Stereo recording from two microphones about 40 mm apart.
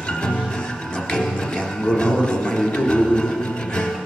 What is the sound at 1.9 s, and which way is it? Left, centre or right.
Music, left.